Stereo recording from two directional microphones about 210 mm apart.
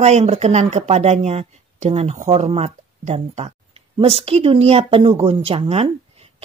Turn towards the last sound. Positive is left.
turn(degrees=-30)  # may be behind; listen again after turning